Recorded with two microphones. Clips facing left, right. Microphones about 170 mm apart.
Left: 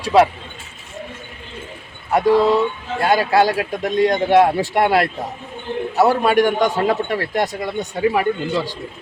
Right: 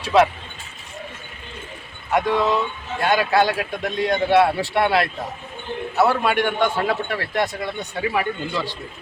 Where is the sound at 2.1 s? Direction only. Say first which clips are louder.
Left 5 dB; 35° left (ahead or behind).